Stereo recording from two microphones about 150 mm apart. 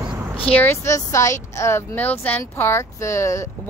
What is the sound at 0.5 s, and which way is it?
Speech, 15° left (ahead or behind).